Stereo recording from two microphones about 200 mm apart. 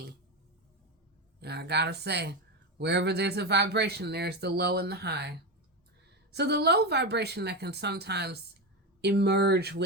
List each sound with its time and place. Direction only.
1.4 s speech: 55° right (ahead or behind)
6.3 s speech: 55° right (ahead or behind)